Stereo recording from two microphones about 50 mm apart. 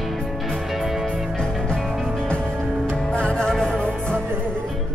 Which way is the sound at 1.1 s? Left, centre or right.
Centre.